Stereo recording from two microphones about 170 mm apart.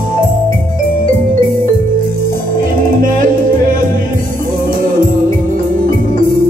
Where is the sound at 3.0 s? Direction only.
55° right (ahead or behind).